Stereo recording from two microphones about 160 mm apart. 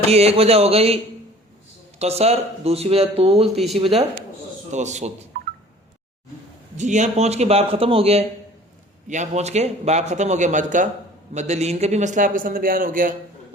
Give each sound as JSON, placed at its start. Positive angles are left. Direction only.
{"t": 0.1, "sound": "speech", "side_deg": -40}
{"t": 2.0, "sound": "speech", "side_deg": -40}
{"t": 3.5, "sound": "speech", "side_deg": 0}
{"t": 3.8, "sound": "speech", "side_deg": -35}
{"t": 4.7, "sound": "speech", "side_deg": -45}
{"t": 6.7, "sound": "a man's voice", "side_deg": -50}